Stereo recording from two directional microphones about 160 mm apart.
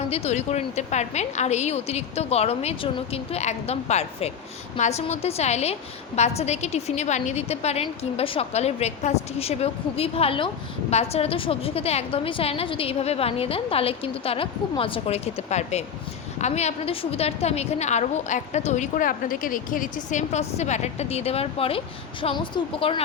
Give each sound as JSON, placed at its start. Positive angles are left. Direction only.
{"t": 0.1, "sound": "a woman's voice", "side_deg": 40}